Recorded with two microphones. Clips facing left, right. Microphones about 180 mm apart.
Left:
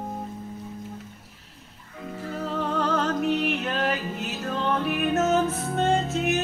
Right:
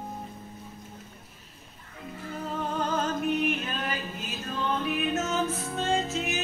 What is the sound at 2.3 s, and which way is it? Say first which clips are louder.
Music: left 4 dB; 70° left (ahead or behind).